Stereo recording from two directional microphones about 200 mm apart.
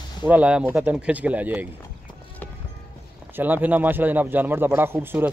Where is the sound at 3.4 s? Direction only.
10° right (ahead or behind).